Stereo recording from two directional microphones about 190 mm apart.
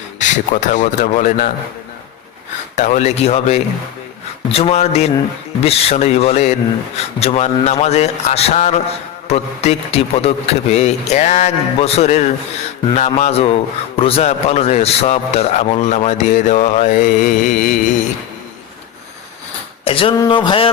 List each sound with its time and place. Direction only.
0.2 s a man's voice: 40° left (ahead or behind)
2.7 s a man's voice: 40° left (ahead or behind)
16.6 s mantra: 40° left (ahead or behind)
19.8 s a sound: 30° left (ahead or behind)